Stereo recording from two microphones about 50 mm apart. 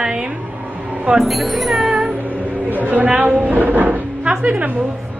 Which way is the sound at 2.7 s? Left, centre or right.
Right.